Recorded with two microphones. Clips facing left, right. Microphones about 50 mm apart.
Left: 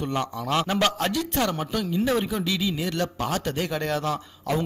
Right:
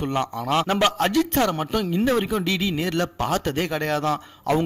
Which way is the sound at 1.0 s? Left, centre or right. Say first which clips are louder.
Right 5 dB; right.